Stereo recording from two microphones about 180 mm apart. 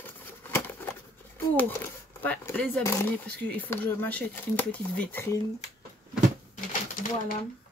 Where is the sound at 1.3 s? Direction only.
10° left (ahead or behind).